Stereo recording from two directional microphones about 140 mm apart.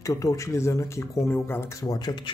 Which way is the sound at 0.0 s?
25° left (ahead or behind).